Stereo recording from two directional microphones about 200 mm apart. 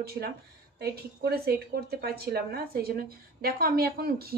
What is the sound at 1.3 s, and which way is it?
Speech, 50° right (ahead or behind).